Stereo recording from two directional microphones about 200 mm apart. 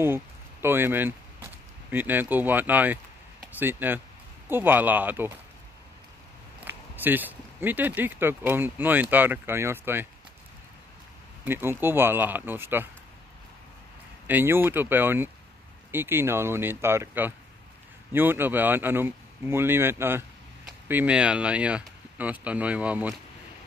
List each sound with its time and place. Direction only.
0.0 s speech: 10° right (ahead or behind)
6.6 s speech: 10° right (ahead or behind)
11.4 s speech: 10° right (ahead or behind)
14.2 s speech: 10° right (ahead or behind)